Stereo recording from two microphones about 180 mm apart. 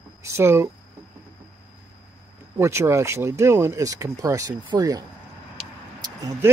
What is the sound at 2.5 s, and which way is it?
Speech, 15° right (ahead or behind).